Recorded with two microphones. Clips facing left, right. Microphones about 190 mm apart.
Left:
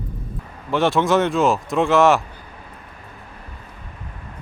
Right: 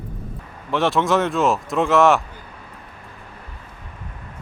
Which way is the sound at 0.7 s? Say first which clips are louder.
Left 1 dB; centre (ahead or behind).